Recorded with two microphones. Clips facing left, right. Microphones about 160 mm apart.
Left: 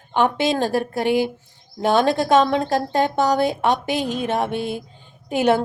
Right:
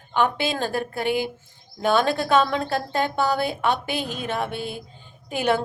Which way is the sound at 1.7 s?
40° left (ahead or behind).